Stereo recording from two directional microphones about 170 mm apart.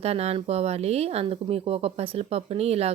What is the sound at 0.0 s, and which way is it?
Speech, 40° right (ahead or behind).